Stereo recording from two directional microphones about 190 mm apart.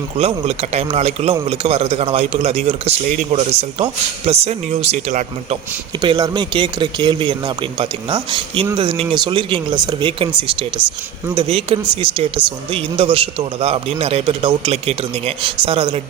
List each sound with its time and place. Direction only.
0.2 s a man's voice: 30° right (ahead or behind)
6.0 s a man's voice: 20° right (ahead or behind)